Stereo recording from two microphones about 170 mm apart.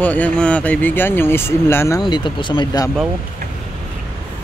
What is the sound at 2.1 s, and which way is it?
Speech, 25° left (ahead or behind).